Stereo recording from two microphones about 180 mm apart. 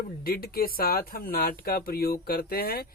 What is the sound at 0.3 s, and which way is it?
A man's voice, 55° left (ahead or behind).